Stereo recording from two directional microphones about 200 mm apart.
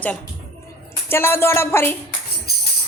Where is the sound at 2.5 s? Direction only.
50° left (ahead or behind).